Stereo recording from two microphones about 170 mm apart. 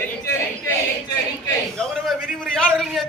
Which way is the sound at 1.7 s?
5° left (ahead or behind).